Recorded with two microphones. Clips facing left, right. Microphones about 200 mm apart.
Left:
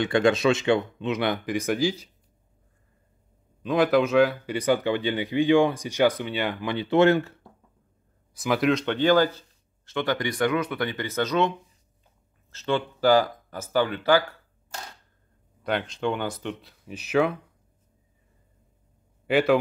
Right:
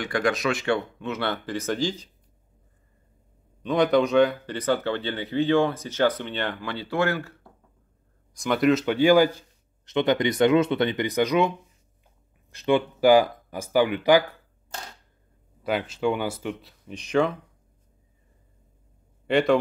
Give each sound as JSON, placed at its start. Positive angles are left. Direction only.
{"t": 0.0, "sound": "speech", "side_deg": 25}
{"t": 3.6, "sound": "speech", "side_deg": 0}
{"t": 8.4, "sound": "speech", "side_deg": 0}
{"t": 15.6, "sound": "speech", "side_deg": -5}
{"t": 19.2, "sound": "a man's voice", "side_deg": 5}